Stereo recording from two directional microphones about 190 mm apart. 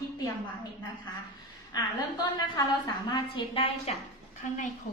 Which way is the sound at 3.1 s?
25° left (ahead or behind).